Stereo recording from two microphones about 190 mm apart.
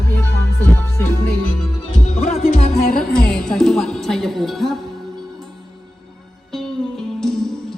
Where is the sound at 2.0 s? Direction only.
35° left (ahead or behind).